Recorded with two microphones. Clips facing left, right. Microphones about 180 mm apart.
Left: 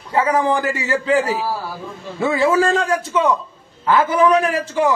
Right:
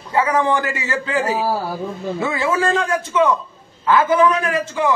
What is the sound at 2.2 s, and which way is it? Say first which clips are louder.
A man's voice: left 5 dB; 35° left (ahead or behind).